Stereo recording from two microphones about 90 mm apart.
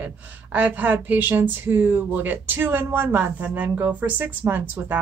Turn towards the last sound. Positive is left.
turn(degrees=-20)  # may be behind; listen again after turning